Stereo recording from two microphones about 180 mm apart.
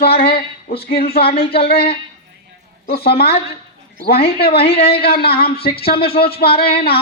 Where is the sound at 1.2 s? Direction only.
30° left (ahead or behind).